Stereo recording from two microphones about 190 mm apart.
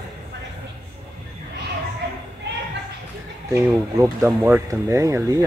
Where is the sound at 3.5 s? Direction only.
15° right (ahead or behind).